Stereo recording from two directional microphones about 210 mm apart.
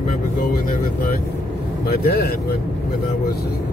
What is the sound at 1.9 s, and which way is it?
Speech, 45° left (ahead or behind).